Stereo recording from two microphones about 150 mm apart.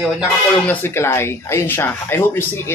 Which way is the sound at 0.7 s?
15° left (ahead or behind).